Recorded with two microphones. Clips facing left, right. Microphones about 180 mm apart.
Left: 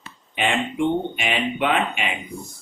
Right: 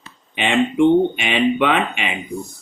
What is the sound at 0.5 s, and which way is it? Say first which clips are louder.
Speech: right 10 dB; 90° right.